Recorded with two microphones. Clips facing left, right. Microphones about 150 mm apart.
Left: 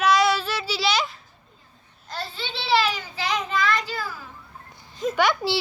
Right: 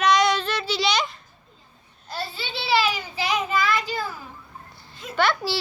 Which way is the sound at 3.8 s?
20° right (ahead or behind).